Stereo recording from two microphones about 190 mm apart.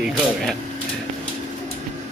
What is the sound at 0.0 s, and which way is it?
Speech, centre (ahead or behind).